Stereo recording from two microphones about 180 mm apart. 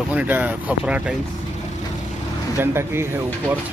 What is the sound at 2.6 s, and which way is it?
Speech, 15° right (ahead or behind).